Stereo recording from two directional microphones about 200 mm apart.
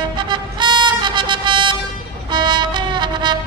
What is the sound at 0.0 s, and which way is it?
Music, 25° right (ahead or behind).